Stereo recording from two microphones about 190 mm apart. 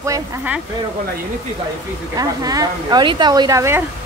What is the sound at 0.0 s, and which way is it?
Speech, 15° right (ahead or behind).